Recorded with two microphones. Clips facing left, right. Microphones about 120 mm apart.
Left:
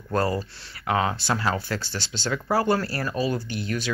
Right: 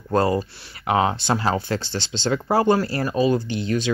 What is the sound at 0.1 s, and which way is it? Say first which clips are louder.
Speech: right 5 dB; 20° right (ahead or behind).